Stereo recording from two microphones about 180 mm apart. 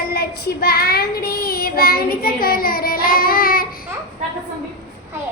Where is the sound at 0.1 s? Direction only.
60° left (ahead or behind).